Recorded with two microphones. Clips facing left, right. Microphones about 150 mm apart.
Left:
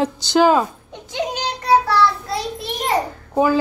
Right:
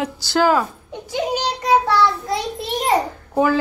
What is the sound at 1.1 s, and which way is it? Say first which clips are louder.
A child's voice: right 2 dB; 15° right (ahead or behind).